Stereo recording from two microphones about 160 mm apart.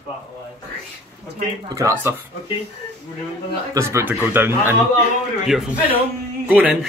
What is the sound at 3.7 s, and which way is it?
Speech, 15° right (ahead or behind).